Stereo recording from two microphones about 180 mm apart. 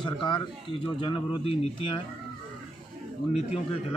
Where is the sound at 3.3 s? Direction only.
35° left (ahead or behind).